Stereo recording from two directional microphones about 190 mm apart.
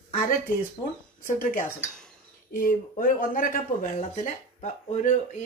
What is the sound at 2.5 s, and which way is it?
Speech, 50° left (ahead or behind).